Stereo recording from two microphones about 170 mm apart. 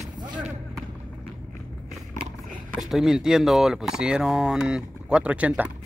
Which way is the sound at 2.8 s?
Centre (ahead or behind).